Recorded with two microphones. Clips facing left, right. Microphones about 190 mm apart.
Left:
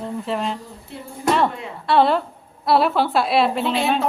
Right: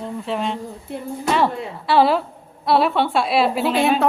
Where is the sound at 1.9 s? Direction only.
5° right (ahead or behind).